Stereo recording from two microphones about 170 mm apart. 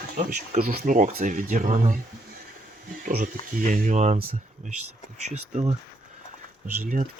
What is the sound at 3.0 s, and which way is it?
Speech, 50° right (ahead or behind).